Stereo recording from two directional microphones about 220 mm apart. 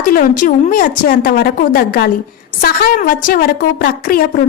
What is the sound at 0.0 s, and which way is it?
A woman's voice, 40° left (ahead or behind).